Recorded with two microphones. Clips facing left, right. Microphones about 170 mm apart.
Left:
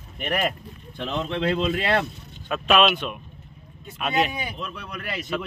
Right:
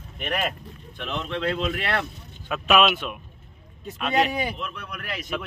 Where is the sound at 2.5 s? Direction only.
5° right (ahead or behind).